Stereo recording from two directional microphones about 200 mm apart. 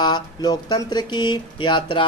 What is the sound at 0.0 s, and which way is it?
Speech, 20° left (ahead or behind).